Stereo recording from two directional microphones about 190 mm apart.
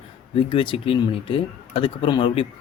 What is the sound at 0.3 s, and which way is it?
Speech, 30° left (ahead or behind).